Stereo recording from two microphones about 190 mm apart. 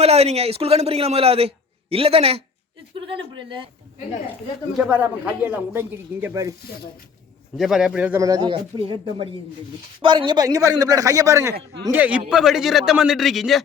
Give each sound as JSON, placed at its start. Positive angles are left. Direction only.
{"t": 0.0, "sound": "a man's voice", "side_deg": -35}
{"t": 4.9, "sound": "speech", "side_deg": -10}
{"t": 7.5, "sound": "speech", "side_deg": 0}
{"t": 11.5, "sound": "speech", "side_deg": -70}
{"t": 11.9, "sound": "a man's voice", "side_deg": -10}